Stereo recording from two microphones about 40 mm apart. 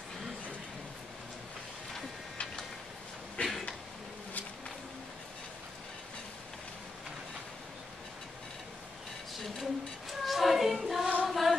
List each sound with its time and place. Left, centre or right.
3.4 s a sound: left
9.4 s child singing: centre
11.2 s music: centre